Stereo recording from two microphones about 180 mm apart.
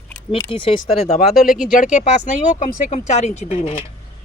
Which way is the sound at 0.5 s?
30° left (ahead or behind).